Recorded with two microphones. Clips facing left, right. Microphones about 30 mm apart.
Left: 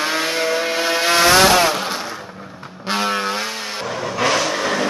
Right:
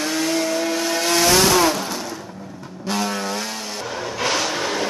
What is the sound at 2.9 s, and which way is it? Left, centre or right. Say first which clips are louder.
Vehicle: left 4 dB; left.